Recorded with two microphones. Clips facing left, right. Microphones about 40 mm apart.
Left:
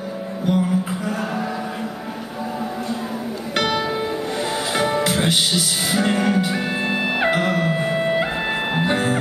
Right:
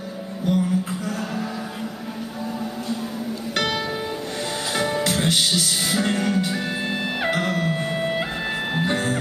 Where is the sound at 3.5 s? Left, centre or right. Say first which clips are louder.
Left 4 dB; centre.